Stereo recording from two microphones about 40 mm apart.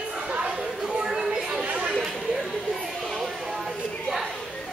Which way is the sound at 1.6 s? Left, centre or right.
Right.